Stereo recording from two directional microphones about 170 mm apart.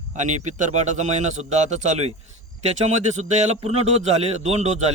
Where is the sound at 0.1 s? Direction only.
45° right (ahead or behind).